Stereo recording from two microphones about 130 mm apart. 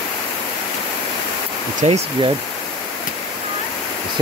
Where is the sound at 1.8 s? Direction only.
50° right (ahead or behind).